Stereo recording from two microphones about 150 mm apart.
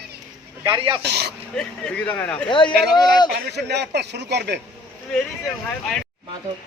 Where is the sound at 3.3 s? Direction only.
90° right.